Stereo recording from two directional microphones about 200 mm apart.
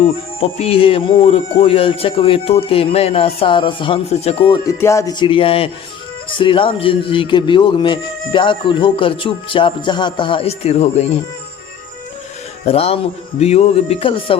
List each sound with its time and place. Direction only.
0.0 s speech: 30° left (ahead or behind)
4.6 s speech: 15° left (ahead or behind); by 11.2 s 30° left (ahead or behind)
12.6 s speech: 30° left (ahead or behind)